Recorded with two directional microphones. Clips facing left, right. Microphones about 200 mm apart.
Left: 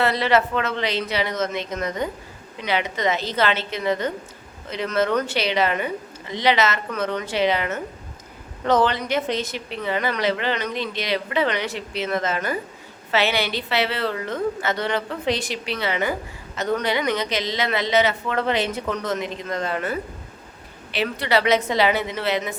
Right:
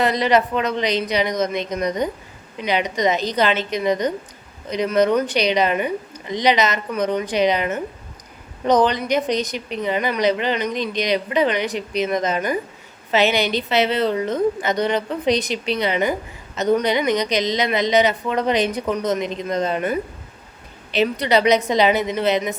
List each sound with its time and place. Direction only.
0.0 s a woman's voice: 15° right (ahead or behind)